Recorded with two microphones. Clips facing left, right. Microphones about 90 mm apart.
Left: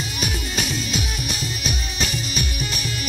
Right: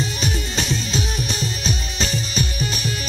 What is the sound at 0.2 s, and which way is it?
Music, 30° right (ahead or behind).